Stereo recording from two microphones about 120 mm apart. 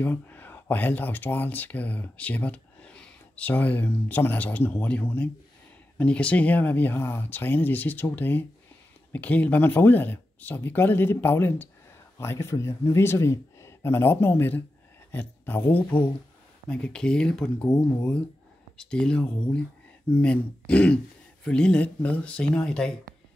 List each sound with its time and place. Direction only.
0.0 s speech: 15° left (ahead or behind)